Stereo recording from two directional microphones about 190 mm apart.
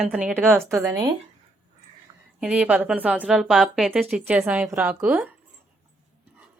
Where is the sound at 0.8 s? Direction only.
15° right (ahead or behind).